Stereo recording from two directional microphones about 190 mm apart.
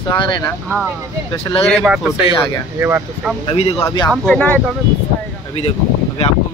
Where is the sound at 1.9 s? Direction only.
5° right (ahead or behind).